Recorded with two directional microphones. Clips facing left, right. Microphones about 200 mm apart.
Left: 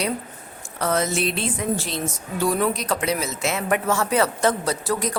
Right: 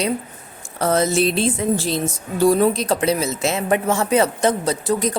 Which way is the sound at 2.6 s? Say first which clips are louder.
Right 5 dB; 25° right (ahead or behind).